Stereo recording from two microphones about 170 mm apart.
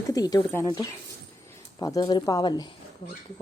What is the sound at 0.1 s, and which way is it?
Speech, 20° left (ahead or behind).